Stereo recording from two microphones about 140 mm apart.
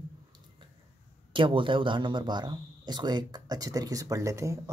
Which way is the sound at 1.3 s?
35° right (ahead or behind).